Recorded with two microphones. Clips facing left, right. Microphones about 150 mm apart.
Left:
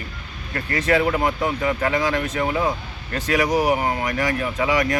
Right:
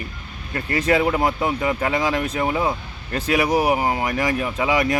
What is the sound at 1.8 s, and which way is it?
Speech, 30° right (ahead or behind).